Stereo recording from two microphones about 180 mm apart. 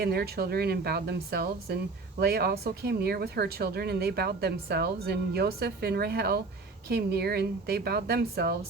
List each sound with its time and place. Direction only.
0.0 s speech: 60° right (ahead or behind)